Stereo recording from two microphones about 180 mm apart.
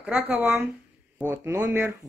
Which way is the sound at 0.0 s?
10° right (ahead or behind).